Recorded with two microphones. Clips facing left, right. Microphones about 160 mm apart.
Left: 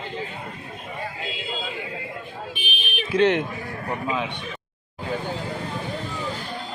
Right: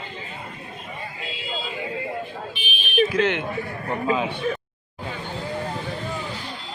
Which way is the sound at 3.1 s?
35° left (ahead or behind).